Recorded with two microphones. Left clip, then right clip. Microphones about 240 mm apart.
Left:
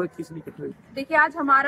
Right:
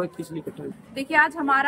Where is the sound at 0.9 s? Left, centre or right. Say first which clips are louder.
Even; centre.